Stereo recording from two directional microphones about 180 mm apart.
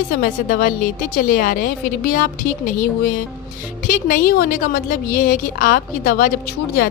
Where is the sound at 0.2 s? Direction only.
50° left (ahead or behind).